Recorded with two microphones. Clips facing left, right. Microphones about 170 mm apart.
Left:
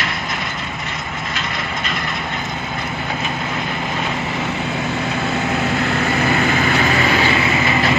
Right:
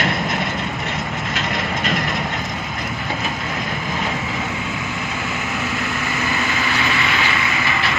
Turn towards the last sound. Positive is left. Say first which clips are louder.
# left 5 dB
turn(degrees=55)  # may be behind; listen again after turning